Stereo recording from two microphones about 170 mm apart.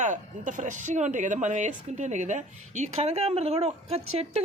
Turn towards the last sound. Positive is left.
turn(degrees=-35)  # may be behind; listen again after turning